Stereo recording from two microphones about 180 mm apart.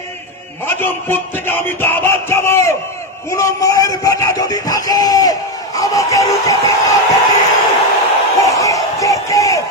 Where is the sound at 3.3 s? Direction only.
15° left (ahead or behind).